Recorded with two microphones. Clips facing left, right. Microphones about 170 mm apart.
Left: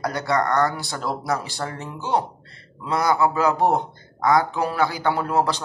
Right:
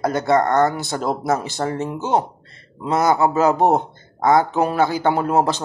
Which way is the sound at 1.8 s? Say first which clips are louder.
Right 6 dB; 45° right (ahead or behind).